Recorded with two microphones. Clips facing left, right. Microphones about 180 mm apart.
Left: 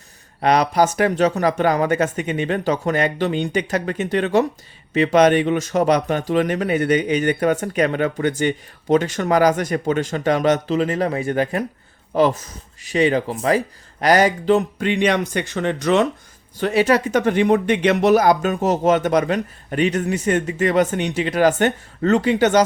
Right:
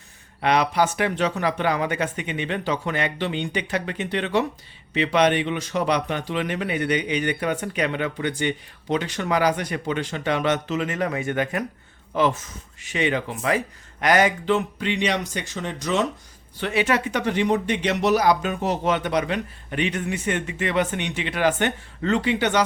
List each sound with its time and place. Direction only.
0.4 s speech: 40° left (ahead or behind); by 16.0 s 60° left (ahead or behind)
16.6 s speech: 40° left (ahead or behind)